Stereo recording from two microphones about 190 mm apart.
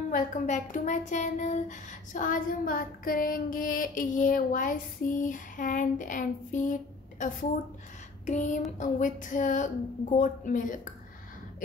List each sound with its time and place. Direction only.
0.1 s speech: 40° left (ahead or behind)
8.3 s a sound: 40° left (ahead or behind)
8.7 s speech: 40° left (ahead or behind)